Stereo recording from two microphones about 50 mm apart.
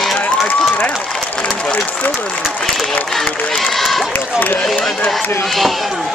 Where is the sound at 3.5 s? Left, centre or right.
Centre.